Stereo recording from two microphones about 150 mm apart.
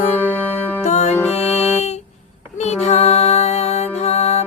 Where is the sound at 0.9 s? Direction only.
50° left (ahead or behind).